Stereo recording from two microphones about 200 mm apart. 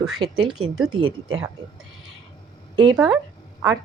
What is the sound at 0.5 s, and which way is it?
Speech, 90° right.